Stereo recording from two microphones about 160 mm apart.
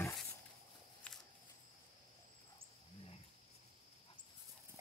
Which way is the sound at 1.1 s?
10° left (ahead or behind).